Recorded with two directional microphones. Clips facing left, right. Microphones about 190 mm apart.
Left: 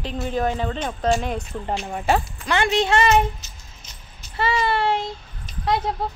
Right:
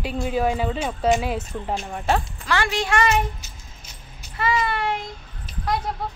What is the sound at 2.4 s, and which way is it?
Speech, 20° left (ahead or behind).